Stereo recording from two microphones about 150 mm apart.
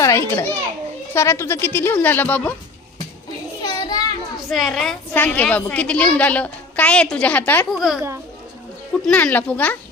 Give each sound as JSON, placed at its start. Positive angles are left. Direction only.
{"t": 0.0, "sound": "a child's voice", "side_deg": 20}
{"t": 3.6, "sound": "children playing", "side_deg": 25}
{"t": 4.4, "sound": "a woman's voice", "side_deg": 0}
{"t": 7.7, "sound": "a child's voice", "side_deg": 0}